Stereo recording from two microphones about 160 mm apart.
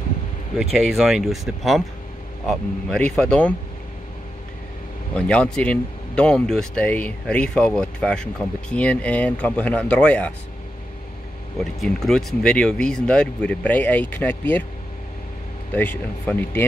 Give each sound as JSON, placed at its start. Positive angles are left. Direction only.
{"t": 0.6, "sound": "speech", "side_deg": -5}
{"t": 5.1, "sound": "speech", "side_deg": 5}
{"t": 11.5, "sound": "speech", "side_deg": 0}
{"t": 15.7, "sound": "speech", "side_deg": 10}